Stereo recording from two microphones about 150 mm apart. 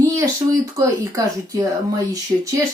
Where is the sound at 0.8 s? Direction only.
20° right (ahead or behind).